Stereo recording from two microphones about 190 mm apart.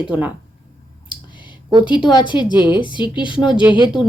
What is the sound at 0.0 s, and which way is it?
Speech, 10° right (ahead or behind).